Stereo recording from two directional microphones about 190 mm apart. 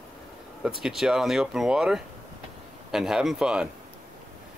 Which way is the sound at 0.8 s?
5° right (ahead or behind).